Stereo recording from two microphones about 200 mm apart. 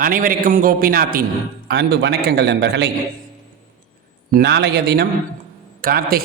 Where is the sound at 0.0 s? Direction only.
45° right (ahead or behind).